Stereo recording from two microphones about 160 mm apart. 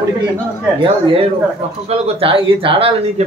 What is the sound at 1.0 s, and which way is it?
A man's voice, 35° right (ahead or behind).